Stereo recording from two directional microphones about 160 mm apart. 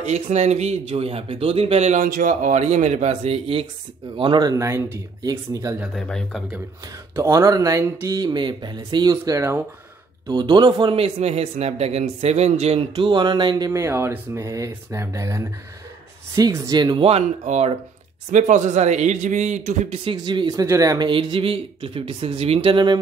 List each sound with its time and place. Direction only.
0.0 s speech: 45° right (ahead or behind)
4.2 s speech: 25° right (ahead or behind)
5.8 s speech: 5° left (ahead or behind)
7.2 s speech: 20° right (ahead or behind)
13.7 s speech: 15° right (ahead or behind); by 20.0 s 50° right (ahead or behind)
20.1 s speech: 30° right (ahead or behind)
21.1 s speech: 35° right (ahead or behind)